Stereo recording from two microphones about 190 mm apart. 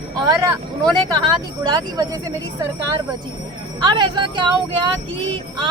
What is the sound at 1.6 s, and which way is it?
Speech, 20° right (ahead or behind).